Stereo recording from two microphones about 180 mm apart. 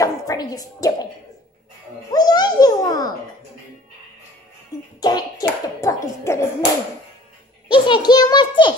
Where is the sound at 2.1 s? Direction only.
20° left (ahead or behind).